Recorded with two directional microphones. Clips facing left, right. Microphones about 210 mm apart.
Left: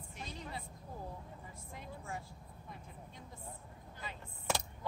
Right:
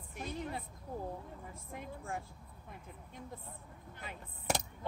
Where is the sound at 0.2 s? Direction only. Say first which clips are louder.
Right 6 dB; 55° right (ahead or behind).